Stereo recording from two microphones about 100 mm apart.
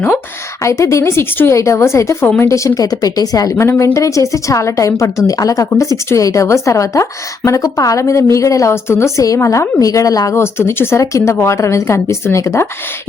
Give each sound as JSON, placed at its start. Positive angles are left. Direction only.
{"t": 0.6, "sound": "a woman's voice", "side_deg": 30}
{"t": 3.5, "sound": "a woman's voice", "side_deg": 25}